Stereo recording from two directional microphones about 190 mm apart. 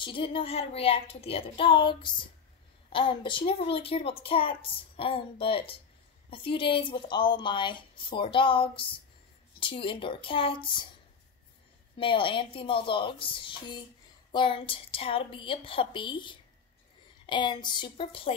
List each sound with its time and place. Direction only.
0.0 s a woman's voice: 25° left (ahead or behind)
12.0 s a woman's voice: 25° left (ahead or behind)